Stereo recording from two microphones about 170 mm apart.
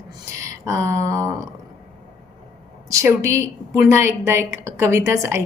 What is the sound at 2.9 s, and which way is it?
A woman's voice, 15° right (ahead or behind).